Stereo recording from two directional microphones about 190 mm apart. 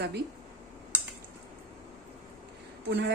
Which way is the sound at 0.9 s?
10° right (ahead or behind).